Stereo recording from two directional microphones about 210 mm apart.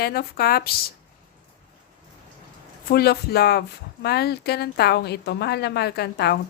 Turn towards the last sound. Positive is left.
turn(degrees=50)  # may be behind; listen again after turning